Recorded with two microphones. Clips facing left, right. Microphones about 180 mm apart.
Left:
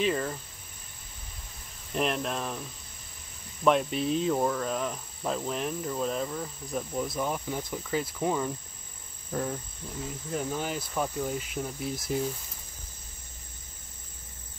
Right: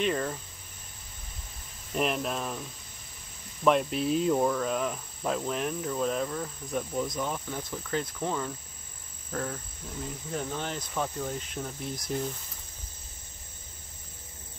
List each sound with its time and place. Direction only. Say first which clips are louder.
0.0 s cricket: left 1 dB; centre (ahead or behind)
1.9 s cricket: even; centre (ahead or behind)
3.6 s cricket: even; centre (ahead or behind)